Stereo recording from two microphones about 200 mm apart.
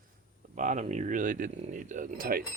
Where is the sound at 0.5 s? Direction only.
40° right (ahead or behind).